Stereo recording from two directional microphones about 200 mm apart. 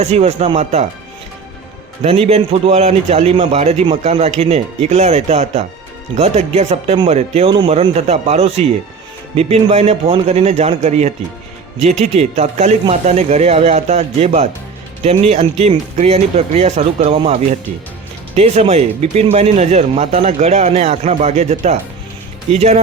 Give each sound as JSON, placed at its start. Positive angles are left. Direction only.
{"t": 0.0, "sound": "speech", "side_deg": -30}
{"t": 2.0, "sound": "speech", "side_deg": -30}